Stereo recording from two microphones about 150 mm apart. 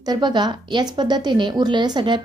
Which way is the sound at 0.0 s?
30° right (ahead or behind).